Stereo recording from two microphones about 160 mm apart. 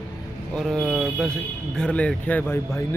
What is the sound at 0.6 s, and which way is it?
Speech, centre (ahead or behind).